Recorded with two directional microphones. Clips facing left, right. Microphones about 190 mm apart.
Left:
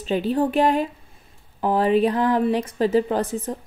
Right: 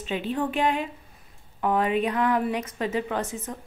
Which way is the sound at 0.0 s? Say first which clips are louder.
Left 6 dB; 35° left (ahead or behind).